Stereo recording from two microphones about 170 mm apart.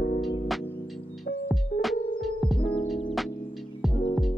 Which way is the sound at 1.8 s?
Centre (ahead or behind).